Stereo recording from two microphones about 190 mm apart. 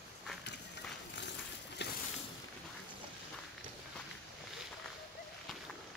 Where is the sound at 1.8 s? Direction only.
60° left (ahead or behind).